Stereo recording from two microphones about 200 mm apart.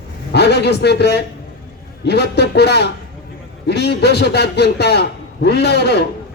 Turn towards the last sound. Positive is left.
turn(degrees=55)  # may be behind; listen again after turning